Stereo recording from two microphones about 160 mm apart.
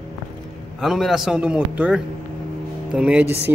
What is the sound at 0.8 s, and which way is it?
Speech, centre (ahead or behind).